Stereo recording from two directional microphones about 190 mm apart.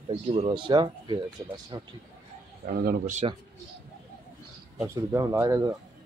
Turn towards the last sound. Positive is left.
turn(degrees=-15)  # may be behind; listen again after turning